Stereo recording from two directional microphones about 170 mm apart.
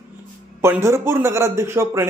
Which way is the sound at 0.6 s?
15° right (ahead or behind).